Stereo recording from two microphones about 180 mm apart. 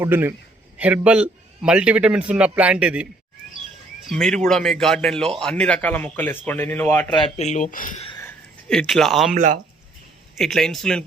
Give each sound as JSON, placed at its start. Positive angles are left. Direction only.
{"t": 0.0, "sound": "a man's voice", "side_deg": -15}
{"t": 4.1, "sound": "speech", "side_deg": 0}
{"t": 7.1, "sound": "speech", "side_deg": 35}
{"t": 8.7, "sound": "speech", "side_deg": 5}
{"t": 9.3, "sound": "speech", "side_deg": -45}
{"t": 10.3, "sound": "speech", "side_deg": 0}